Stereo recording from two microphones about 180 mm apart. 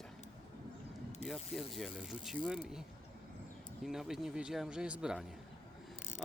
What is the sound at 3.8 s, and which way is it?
A man's voice, centre (ahead or behind).